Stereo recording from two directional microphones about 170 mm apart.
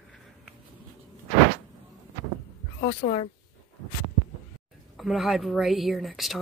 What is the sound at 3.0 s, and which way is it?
Speech, 45° left (ahead or behind).